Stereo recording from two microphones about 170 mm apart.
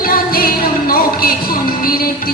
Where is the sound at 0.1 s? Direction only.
60° left (ahead or behind).